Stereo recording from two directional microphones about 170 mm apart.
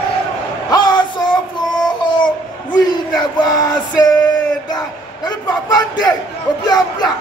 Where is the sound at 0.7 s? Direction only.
25° left (ahead or behind).